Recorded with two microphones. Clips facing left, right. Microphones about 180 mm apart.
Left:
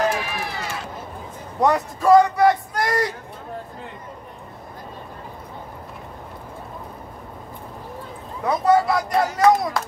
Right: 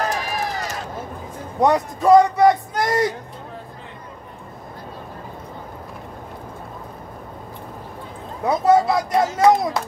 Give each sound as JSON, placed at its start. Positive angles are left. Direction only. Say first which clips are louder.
{"t": 0.0, "sound": "run", "louder": "left 1 dB", "side_deg": -40}
{"t": 1.6, "sound": "speech", "louder": "right 2 dB", "side_deg": -20}
{"t": 8.5, "sound": "a sound", "louder": "right 2 dB", "side_deg": -25}